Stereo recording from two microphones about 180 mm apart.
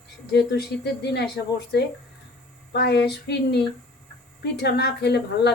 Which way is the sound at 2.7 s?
65° left (ahead or behind).